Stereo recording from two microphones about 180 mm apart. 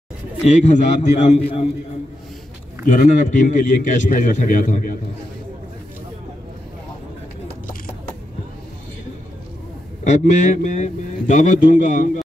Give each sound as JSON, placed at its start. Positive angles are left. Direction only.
{"t": 0.5, "sound": "a man's voice", "side_deg": 40}
{"t": 2.9, "sound": "a man's voice", "side_deg": 45}
{"t": 10.0, "sound": "a man's voice", "side_deg": 40}